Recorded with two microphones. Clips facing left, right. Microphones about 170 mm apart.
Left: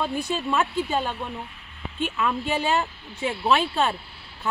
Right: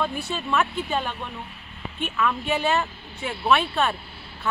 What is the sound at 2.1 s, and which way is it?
Speech, 25° left (ahead or behind).